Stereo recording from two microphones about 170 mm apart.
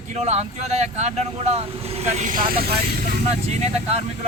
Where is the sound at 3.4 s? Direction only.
40° right (ahead or behind).